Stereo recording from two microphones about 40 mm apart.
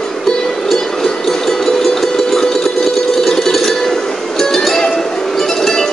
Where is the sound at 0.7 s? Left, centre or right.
Centre.